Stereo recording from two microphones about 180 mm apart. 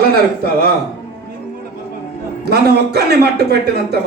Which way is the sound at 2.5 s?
65° right (ahead or behind).